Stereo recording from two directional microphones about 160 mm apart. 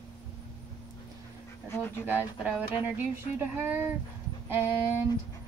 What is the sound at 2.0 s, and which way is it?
Speech, 10° right (ahead or behind).